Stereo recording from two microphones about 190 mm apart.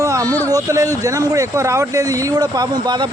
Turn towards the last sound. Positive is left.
turn(degrees=-20)  # may be behind; listen again after turning